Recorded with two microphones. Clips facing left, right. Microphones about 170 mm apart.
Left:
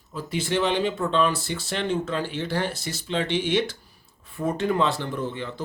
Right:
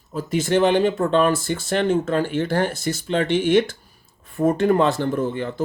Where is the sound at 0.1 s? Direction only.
45° right (ahead or behind).